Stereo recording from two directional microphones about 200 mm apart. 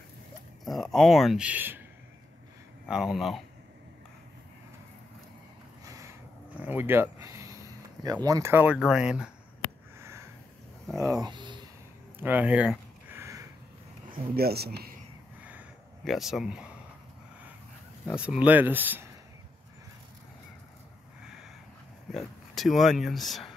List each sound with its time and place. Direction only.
0.7 s speech: centre (ahead or behind)
2.9 s speech: centre (ahead or behind)
5.9 s a sound: 15° right (ahead or behind)
6.6 s speech: 10° right (ahead or behind)
9.9 s sniff: 15° right (ahead or behind)
11.1 s speech: 20° right (ahead or behind)
12.2 s a sound: 10° right (ahead or behind)
14.3 s speech: 50° right (ahead or behind)
15.4 s a sound: 5° right (ahead or behind)
18.2 s speech: 5° right (ahead or behind)
22.1 s speech: centre (ahead or behind)